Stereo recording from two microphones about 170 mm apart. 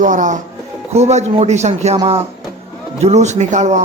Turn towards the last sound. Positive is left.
turn(degrees=-45)  # may be behind; listen again after turning